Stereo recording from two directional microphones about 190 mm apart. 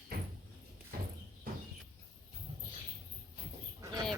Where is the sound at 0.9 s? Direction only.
50° right (ahead or behind).